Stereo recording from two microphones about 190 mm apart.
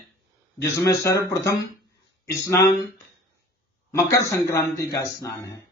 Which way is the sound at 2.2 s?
15° left (ahead or behind).